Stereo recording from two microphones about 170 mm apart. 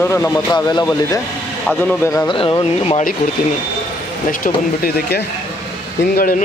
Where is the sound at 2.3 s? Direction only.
30° left (ahead or behind).